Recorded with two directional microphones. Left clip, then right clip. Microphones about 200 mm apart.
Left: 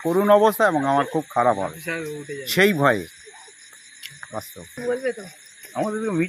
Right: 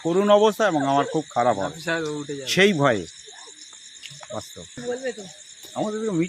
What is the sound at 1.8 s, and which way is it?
Speech, 30° right (ahead or behind).